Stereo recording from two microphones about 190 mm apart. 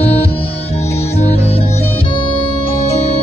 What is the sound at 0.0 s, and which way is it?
Music, 35° left (ahead or behind).